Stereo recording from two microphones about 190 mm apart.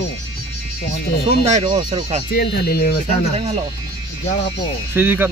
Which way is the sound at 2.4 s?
60° left (ahead or behind).